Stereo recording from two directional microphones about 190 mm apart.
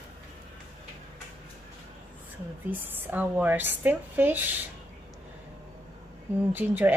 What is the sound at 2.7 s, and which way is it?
Speech, 10° right (ahead or behind).